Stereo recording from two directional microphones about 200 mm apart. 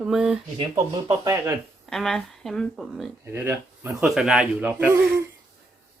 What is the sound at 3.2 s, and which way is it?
Speech, 10° right (ahead or behind).